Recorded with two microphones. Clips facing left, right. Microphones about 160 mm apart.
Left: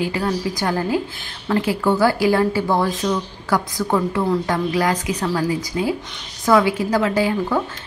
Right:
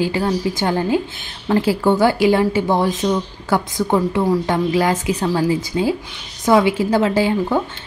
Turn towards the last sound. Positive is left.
turn(degrees=-25)  # may be behind; listen again after turning